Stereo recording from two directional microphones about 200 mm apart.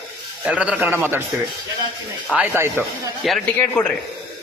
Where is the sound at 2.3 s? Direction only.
10° right (ahead or behind).